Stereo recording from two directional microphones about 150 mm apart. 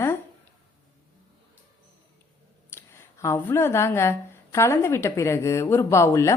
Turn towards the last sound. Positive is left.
turn(degrees=20)  # may be behind; listen again after turning